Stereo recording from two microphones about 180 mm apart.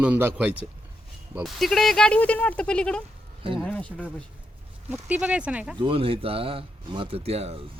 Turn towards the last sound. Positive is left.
turn(degrees=-35)  # may be behind; listen again after turning